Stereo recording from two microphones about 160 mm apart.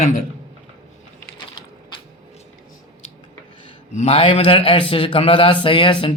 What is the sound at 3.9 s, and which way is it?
A man's voice, 35° left (ahead or behind).